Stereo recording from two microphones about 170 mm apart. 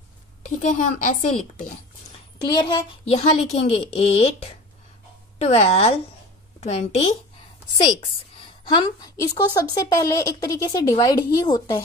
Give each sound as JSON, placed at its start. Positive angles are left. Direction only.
{"t": 0.4, "sound": "a woman's voice", "side_deg": 50}
{"t": 2.4, "sound": "a child's voice", "side_deg": 25}
{"t": 7.8, "sound": "a woman's voice", "side_deg": 30}